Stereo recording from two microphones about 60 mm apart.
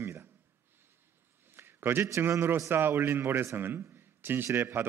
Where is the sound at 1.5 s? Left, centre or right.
Right.